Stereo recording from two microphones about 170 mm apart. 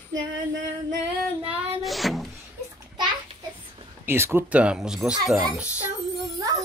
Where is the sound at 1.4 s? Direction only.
35° right (ahead or behind).